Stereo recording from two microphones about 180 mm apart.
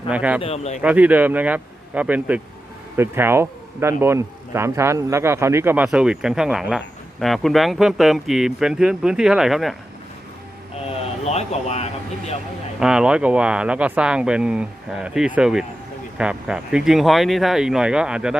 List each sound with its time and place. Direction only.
0.1 s speech: 10° right (ahead or behind)
0.4 s speech: 35° left (ahead or behind)
0.8 s speech: 10° right (ahead or behind)
11.2 s speech: 35° left (ahead or behind)
12.8 s speech: 5° right (ahead or behind)